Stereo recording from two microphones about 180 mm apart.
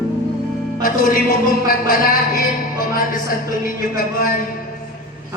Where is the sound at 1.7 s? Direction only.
50° left (ahead or behind).